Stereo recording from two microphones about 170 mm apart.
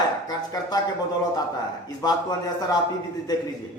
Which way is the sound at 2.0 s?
25° left (ahead or behind).